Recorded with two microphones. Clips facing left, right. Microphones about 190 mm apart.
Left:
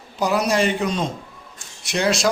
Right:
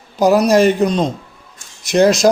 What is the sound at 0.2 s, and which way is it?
A man's voice, 40° right (ahead or behind).